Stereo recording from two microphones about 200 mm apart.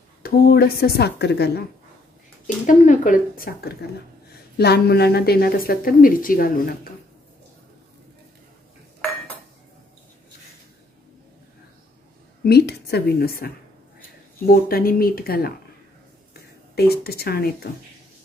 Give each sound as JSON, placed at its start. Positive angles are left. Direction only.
{"t": 0.2, "sound": "a woman's voice", "side_deg": 50}
{"t": 2.4, "sound": "a woman's voice", "side_deg": 40}
{"t": 12.4, "sound": "a woman's voice", "side_deg": 55}
{"t": 16.7, "sound": "a woman's voice", "side_deg": 50}